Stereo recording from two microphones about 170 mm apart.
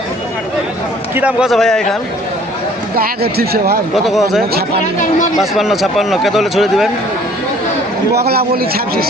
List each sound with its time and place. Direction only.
1.1 s speech: 10° right (ahead or behind)
2.9 s a man's voice: 65° right (ahead or behind)
3.9 s speech: centre (ahead or behind)
8.1 s a man's voice: 70° right (ahead or behind)